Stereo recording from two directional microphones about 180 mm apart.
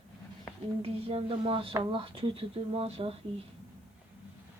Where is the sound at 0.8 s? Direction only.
30° right (ahead or behind).